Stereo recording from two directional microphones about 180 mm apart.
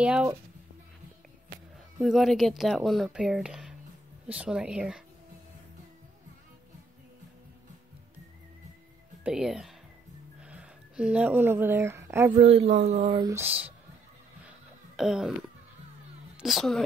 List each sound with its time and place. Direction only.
0.0 s speech: 5° right (ahead or behind)
2.0 s speech: centre (ahead or behind)
9.2 s speech: 5° right (ahead or behind)
12.4 s speech: 35° right (ahead or behind)
13.3 s speech: 10° right (ahead or behind)
15.0 s speech: centre (ahead or behind)
16.3 s a woman's voice: centre (ahead or behind)